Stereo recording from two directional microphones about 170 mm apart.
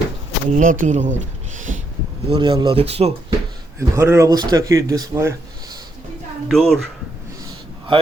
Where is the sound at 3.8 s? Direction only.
15° right (ahead or behind).